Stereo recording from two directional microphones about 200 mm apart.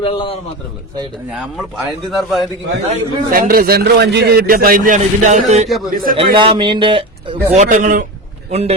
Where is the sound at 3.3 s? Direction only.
45° right (ahead or behind).